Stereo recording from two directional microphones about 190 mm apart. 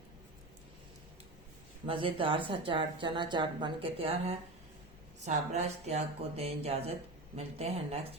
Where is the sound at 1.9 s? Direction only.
30° right (ahead or behind).